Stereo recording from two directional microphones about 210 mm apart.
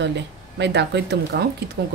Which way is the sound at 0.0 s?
55° right (ahead or behind).